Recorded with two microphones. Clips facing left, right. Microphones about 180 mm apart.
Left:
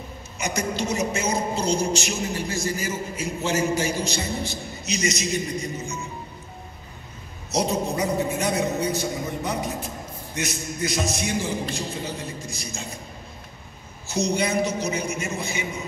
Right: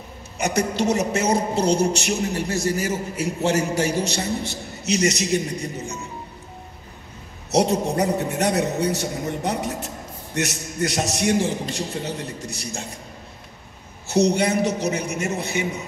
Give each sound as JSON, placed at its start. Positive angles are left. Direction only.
{"t": 0.4, "sound": "a woman's voice", "side_deg": -65}
{"t": 7.5, "sound": "a woman's voice", "side_deg": -70}
{"t": 14.0, "sound": "a woman's voice", "side_deg": -70}